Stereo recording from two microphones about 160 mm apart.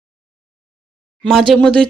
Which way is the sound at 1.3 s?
Centre (ahead or behind).